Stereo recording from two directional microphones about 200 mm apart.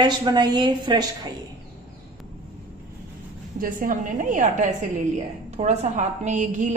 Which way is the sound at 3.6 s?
45° right (ahead or behind).